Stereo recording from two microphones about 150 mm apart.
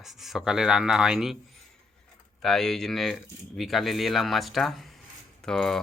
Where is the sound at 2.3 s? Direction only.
Centre (ahead or behind).